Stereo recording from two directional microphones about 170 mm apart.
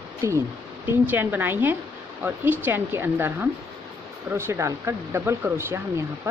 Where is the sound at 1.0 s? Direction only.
10° right (ahead or behind).